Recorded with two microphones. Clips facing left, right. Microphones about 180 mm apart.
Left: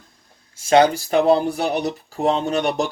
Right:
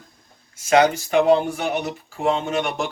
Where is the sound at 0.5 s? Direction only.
30° left (ahead or behind).